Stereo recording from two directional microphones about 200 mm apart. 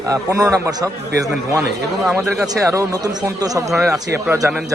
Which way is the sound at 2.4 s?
15° right (ahead or behind).